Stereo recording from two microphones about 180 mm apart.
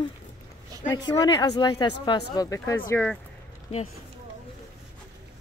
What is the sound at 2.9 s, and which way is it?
Speech, 5° left (ahead or behind).